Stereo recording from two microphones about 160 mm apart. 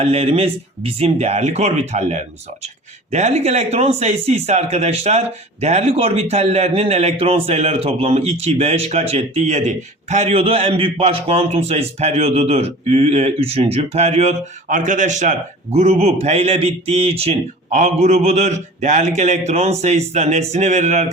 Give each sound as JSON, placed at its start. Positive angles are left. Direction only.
{"t": 0.0, "sound": "speech", "side_deg": -40}